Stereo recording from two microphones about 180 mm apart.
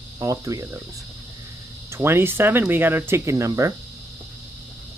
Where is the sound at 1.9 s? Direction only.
15° right (ahead or behind).